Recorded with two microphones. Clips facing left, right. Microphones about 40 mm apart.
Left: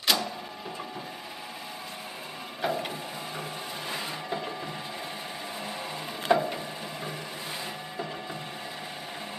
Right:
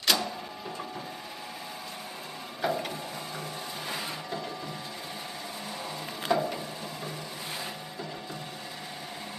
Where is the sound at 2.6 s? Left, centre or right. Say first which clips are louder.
Even; centre.